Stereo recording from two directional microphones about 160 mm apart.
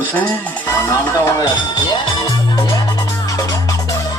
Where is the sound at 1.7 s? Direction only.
25° left (ahead or behind).